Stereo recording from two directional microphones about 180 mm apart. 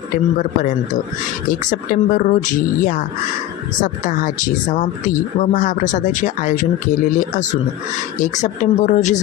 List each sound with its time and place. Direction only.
1.5 s speech: 50° left (ahead or behind)
8.2 s speech: 45° left (ahead or behind)